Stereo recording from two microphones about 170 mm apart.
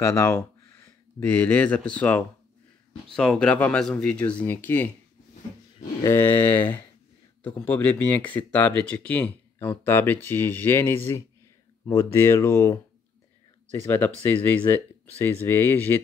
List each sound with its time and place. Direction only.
0.0 s speech: 15° left (ahead or behind)
6.0 s speech: 15° left (ahead or behind)